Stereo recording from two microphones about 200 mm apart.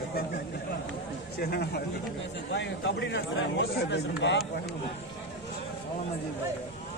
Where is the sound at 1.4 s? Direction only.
50° left (ahead or behind).